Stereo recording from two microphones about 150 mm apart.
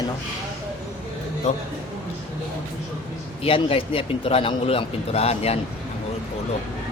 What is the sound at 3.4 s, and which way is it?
A man's voice, 35° left (ahead or behind).